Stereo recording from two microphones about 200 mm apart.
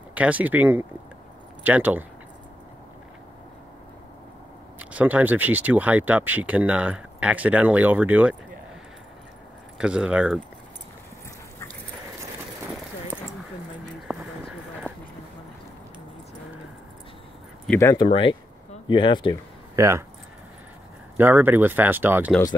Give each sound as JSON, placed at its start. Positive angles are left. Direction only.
{"t": 0.1, "sound": "speech", "side_deg": -5}
{"t": 4.7, "sound": "speech", "side_deg": -10}
{"t": 9.8, "sound": "speech", "side_deg": -5}
{"t": 13.1, "sound": "a sound", "side_deg": -5}
{"t": 14.8, "sound": "clip-clop", "side_deg": 10}
{"t": 17.6, "sound": "speech", "side_deg": 15}
{"t": 19.7, "sound": "speech", "side_deg": -15}
{"t": 21.2, "sound": "speech", "side_deg": -10}